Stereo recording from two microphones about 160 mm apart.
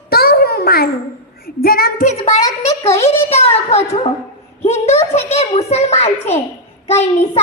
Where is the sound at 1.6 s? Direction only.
70° left (ahead or behind).